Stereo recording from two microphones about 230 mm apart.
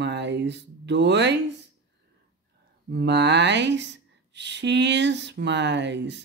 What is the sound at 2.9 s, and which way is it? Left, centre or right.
Speech, right.